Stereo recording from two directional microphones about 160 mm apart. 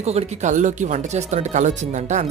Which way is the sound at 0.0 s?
45° right (ahead or behind).